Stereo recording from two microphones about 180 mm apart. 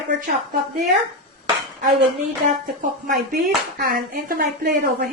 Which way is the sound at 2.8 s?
50° right (ahead or behind).